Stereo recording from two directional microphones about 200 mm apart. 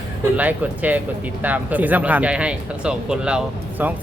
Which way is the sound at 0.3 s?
10° right (ahead or behind).